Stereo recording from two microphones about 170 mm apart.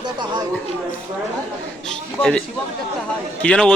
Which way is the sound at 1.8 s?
5° left (ahead or behind).